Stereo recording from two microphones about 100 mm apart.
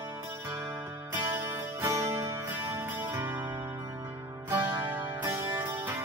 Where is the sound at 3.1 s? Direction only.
25° right (ahead or behind).